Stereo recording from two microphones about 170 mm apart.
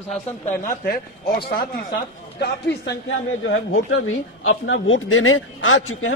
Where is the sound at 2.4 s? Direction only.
75° left (ahead or behind).